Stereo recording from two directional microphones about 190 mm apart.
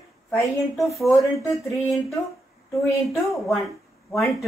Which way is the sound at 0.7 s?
Centre (ahead or behind).